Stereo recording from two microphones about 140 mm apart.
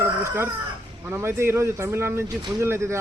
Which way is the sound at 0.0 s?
20° right (ahead or behind).